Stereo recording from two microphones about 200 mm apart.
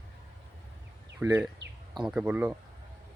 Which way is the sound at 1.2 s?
5° right (ahead or behind).